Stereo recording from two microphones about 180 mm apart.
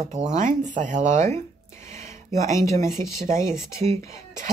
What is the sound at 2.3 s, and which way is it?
Speech, 40° right (ahead or behind).